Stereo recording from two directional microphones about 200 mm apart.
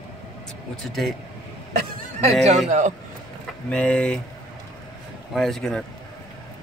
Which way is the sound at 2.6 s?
35° right (ahead or behind).